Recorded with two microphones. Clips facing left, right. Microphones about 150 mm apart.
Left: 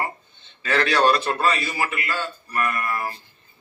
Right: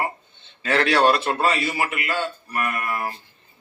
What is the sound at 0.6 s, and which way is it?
A man's voice, 20° right (ahead or behind).